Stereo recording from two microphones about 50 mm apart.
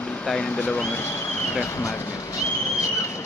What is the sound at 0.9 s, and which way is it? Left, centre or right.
Speech, left.